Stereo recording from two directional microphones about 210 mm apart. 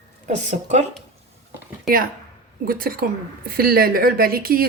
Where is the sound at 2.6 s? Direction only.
45° right (ahead or behind).